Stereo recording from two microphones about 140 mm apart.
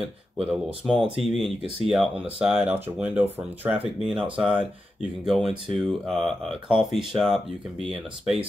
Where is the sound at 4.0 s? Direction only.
Centre (ahead or behind).